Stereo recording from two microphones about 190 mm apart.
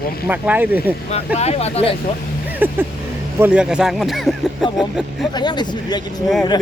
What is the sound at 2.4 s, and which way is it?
Speech, 10° right (ahead or behind).